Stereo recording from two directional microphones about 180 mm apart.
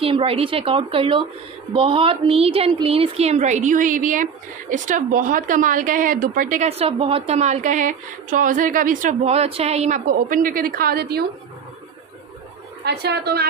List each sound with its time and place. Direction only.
0.0 s a woman's voice: 30° right (ahead or behind); by 11.2 s 60° right (ahead or behind)
12.8 s a woman's voice: 65° right (ahead or behind)